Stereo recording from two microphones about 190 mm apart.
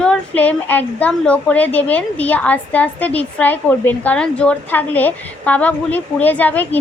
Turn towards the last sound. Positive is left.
turn(degrees=10)  # may be behind; listen again after turning